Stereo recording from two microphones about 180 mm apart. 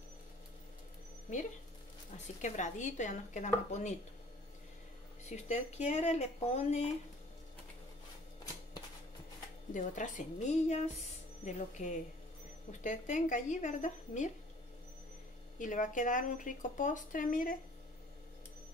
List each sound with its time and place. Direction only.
2.1 s speech: 45° left (ahead or behind)
5.3 s speech: 40° left (ahead or behind)
9.8 s speech: 45° left (ahead or behind)
15.6 s speech: 45° left (ahead or behind)